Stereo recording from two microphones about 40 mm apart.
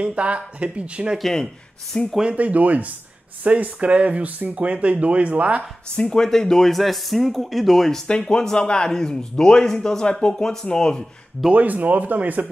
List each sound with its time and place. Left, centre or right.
0.0 s speech: right
1.9 s speech: centre
2.3 s speech: right
5.9 s speech: centre
8.3 s speech: centre
11.5 s speech: right